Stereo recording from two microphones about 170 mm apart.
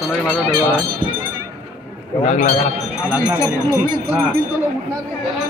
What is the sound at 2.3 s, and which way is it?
Speech, 45° left (ahead or behind).